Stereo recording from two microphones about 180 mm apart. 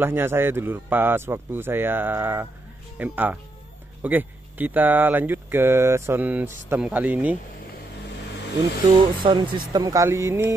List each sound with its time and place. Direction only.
0.0 s speech: 10° right (ahead or behind)
9.2 s speech: 25° right (ahead or behind)